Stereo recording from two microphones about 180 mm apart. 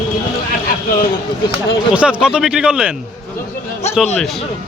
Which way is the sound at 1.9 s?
5° right (ahead or behind).